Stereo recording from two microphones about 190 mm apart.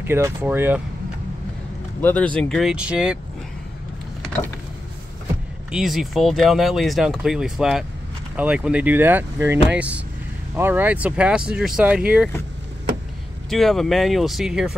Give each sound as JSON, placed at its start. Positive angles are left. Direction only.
{"t": 0.0, "sound": "speech", "side_deg": -10}
{"t": 2.0, "sound": "speech", "side_deg": 10}
{"t": 5.7, "sound": "speech", "side_deg": 0}
{"t": 13.5, "sound": "speech", "side_deg": 0}